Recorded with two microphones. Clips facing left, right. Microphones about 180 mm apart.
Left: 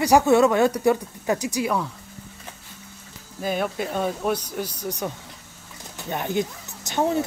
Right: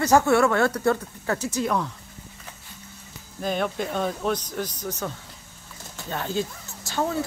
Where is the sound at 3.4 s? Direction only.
5° left (ahead or behind).